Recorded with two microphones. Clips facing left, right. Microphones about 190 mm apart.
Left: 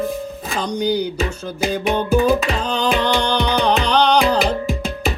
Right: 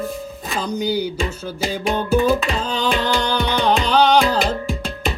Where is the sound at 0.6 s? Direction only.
5° right (ahead or behind).